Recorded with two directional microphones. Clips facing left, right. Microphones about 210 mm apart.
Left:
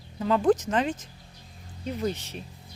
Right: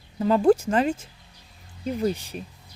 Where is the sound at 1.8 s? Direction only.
10° right (ahead or behind).